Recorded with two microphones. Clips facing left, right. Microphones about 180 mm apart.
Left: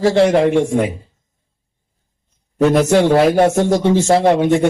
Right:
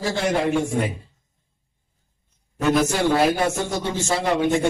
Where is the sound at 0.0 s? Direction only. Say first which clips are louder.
Left 10 dB; 70° left (ahead or behind).